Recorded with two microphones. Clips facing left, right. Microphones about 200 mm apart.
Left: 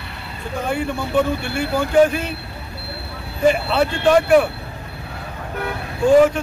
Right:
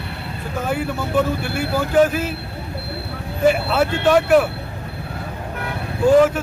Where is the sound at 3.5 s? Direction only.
5° right (ahead or behind).